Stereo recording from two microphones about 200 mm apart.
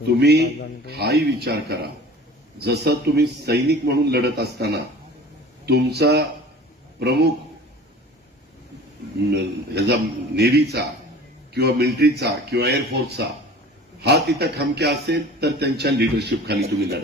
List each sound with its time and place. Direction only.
0.2 s a man's voice: 55° right (ahead or behind)
9.3 s a man's voice: 55° right (ahead or behind)